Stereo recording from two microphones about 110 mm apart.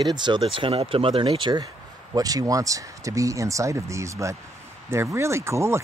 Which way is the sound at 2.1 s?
35° right (ahead or behind).